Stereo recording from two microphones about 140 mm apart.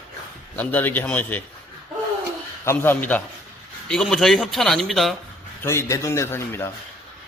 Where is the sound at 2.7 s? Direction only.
15° left (ahead or behind).